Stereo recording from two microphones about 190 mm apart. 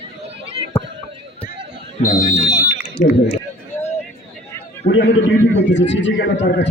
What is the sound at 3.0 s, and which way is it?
Speech, 40° left (ahead or behind).